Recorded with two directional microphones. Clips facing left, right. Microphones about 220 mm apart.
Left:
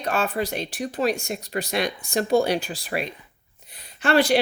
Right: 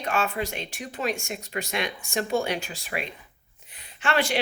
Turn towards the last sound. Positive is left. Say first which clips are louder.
# left 6 dB
turn(degrees=40)  # may be behind; listen again after turning